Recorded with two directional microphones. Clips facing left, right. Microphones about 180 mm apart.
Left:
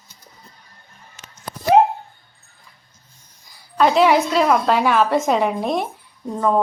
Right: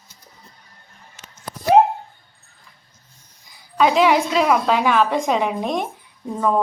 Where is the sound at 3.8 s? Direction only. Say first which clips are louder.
Left 1 dB; centre (ahead or behind).